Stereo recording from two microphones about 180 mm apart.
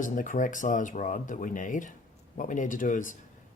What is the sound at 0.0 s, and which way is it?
Speech, 45° left (ahead or behind).